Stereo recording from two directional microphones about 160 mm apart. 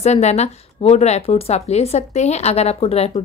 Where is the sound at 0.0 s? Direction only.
45° left (ahead or behind).